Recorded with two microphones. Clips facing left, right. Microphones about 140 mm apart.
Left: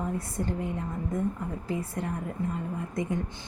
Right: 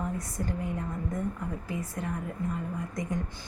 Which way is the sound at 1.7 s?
30° left (ahead or behind).